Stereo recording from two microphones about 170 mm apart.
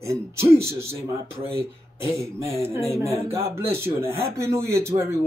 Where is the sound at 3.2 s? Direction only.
15° right (ahead or behind).